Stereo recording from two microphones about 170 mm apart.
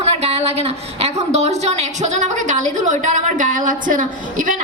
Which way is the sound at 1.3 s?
40° right (ahead or behind).